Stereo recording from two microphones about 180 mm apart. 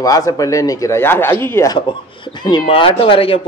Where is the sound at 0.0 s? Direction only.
20° left (ahead or behind).